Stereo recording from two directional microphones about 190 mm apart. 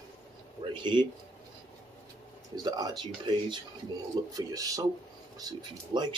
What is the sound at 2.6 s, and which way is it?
Speech, 20° right (ahead or behind).